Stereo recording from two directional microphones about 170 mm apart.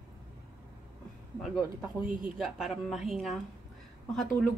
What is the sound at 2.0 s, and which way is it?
Speech, 5° right (ahead or behind).